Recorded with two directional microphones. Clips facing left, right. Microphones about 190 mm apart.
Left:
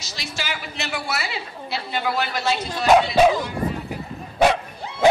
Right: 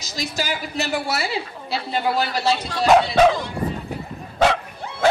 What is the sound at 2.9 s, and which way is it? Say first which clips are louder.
Speech: even; 5° left (ahead or behind).